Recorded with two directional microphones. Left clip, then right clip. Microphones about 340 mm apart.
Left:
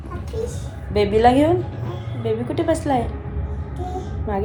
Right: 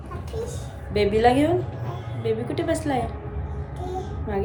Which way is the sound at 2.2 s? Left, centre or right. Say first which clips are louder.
Left 4 dB; centre.